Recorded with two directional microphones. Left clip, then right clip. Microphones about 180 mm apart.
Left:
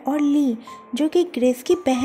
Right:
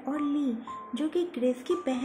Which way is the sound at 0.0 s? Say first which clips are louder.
Left 10 dB; 35° left (ahead or behind).